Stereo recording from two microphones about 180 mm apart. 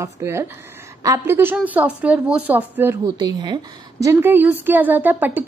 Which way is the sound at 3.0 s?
25° right (ahead or behind).